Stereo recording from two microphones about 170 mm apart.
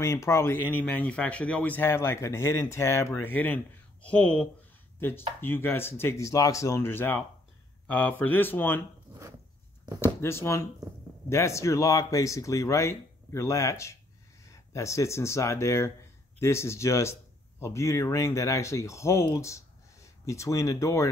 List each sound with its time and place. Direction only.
0.0 s speech: 15° left (ahead or behind)
4.9 s a sound: 10° left (ahead or behind)
5.4 s speech: 10° left (ahead or behind)
10.0 s speech: 15° left (ahead or behind)